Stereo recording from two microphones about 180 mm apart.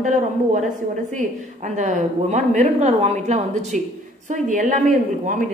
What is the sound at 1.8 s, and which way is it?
A woman's voice, 40° right (ahead or behind).